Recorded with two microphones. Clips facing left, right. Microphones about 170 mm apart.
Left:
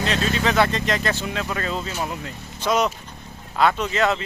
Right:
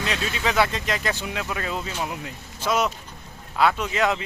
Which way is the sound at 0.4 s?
10° right (ahead or behind).